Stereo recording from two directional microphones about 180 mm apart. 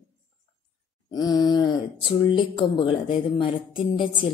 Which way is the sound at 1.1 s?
20° left (ahead or behind).